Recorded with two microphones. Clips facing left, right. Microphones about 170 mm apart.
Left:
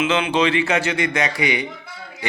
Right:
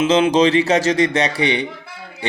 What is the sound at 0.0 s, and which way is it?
Speech, 40° right (ahead or behind).